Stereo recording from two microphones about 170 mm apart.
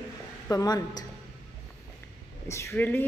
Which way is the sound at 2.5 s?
15° left (ahead or behind).